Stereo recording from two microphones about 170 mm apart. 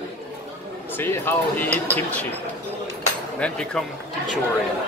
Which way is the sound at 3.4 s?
5° left (ahead or behind).